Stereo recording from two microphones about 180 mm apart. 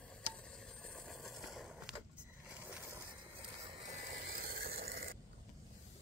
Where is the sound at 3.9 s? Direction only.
45° right (ahead or behind).